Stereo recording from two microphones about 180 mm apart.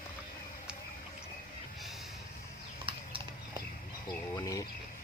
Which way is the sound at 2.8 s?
30° right (ahead or behind).